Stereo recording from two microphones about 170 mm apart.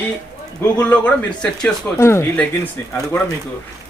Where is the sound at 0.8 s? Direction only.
10° left (ahead or behind).